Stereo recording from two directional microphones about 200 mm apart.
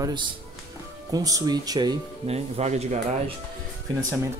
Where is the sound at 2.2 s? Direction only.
30° right (ahead or behind).